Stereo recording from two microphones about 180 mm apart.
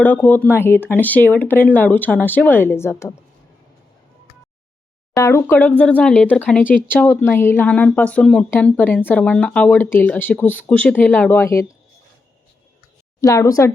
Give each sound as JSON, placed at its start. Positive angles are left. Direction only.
{"t": 0.0, "sound": "speech", "side_deg": 10}
{"t": 5.1, "sound": "speech", "side_deg": 15}
{"t": 13.2, "sound": "speech", "side_deg": 20}